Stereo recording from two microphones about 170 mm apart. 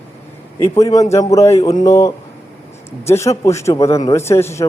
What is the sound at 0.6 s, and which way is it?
A man's voice, 20° left (ahead or behind).